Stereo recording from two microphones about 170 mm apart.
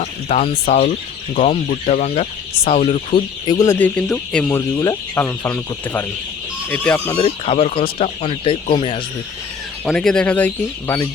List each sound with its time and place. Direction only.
0.0 s speech: 40° left (ahead or behind); by 7.2 s 10° left (ahead or behind)
7.2 s speech: 35° left (ahead or behind)
9.8 s speech: 5° left (ahead or behind)